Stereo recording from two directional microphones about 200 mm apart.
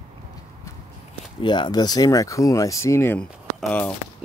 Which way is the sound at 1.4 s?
25° left (ahead or behind).